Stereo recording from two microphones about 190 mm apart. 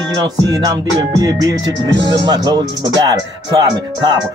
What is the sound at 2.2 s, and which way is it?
Speech, 20° right (ahead or behind).